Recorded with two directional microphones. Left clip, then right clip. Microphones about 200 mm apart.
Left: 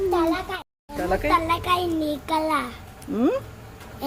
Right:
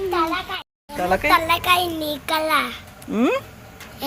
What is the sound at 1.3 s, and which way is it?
A child's voice, 5° left (ahead or behind).